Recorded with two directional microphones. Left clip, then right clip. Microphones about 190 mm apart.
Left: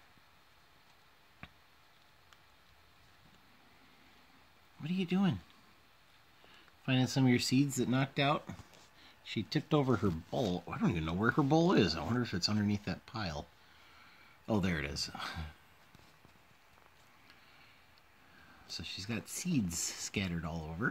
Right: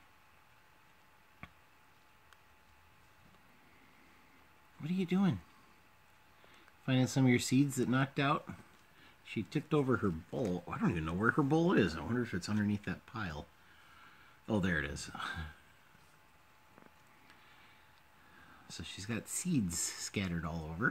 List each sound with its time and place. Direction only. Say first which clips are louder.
1.4 s tick: even; 5° right (ahead or behind)
4.8 s speech: even; 5° right (ahead or behind)
6.9 s speech: even; 5° right (ahead or behind); by 8.5 s 20° left (ahead or behind)
9.2 s speech: left 2 dB; 40° left (ahead or behind)
10.6 s speech: even; 15° left (ahead or behind)
18.8 s speech: left 1 dB; centre (ahead or behind)